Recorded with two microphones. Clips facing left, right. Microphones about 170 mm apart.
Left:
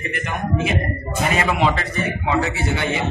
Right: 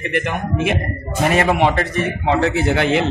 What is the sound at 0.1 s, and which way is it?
A man's voice, 60° right (ahead or behind).